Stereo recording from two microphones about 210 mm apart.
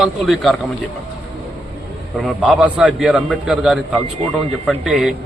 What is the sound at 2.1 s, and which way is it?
A man's voice, centre (ahead or behind).